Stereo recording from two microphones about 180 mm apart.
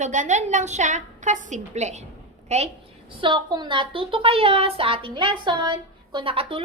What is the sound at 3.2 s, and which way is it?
A woman's voice, 25° right (ahead or behind).